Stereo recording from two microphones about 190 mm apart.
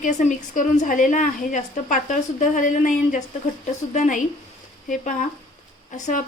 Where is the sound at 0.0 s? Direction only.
40° left (ahead or behind).